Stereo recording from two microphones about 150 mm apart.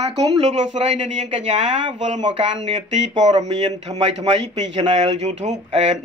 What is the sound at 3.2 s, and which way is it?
Speech, 50° right (ahead or behind).